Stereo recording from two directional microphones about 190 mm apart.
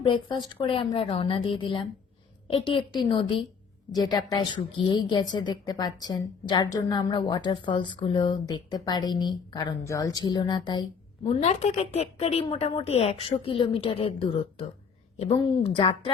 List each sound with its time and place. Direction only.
0.0 s a woman's voice: 25° left (ahead or behind)
11.3 s a woman's voice: 35° left (ahead or behind)